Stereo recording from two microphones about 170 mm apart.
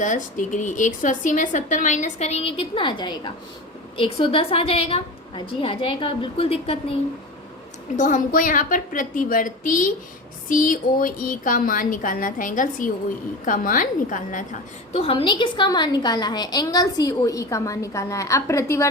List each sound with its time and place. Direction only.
0.0 s a woman's voice: 50° left (ahead or behind)
7.9 s a woman's voice: 50° left (ahead or behind)
14.9 s a woman's voice: 30° left (ahead or behind); by 18.9 s 15° left (ahead or behind)